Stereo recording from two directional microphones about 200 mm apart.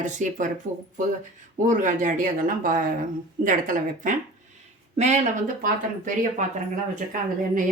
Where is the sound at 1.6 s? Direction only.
40° right (ahead or behind).